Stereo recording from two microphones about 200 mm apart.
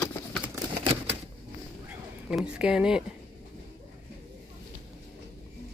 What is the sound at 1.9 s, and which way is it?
Speech, 5° right (ahead or behind).